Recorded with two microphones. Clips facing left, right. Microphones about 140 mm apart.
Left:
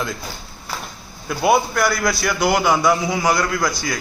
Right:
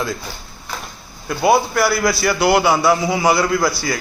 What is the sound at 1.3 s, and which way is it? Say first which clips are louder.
A man's voice: right 2 dB; centre (ahead or behind).